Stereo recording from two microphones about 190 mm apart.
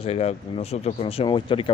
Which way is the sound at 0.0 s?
30° left (ahead or behind).